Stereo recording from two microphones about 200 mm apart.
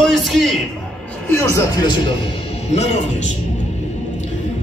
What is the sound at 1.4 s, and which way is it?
A man's voice, 20° left (ahead or behind).